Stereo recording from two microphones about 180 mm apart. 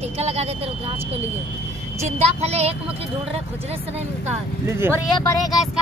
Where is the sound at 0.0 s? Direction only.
35° right (ahead or behind).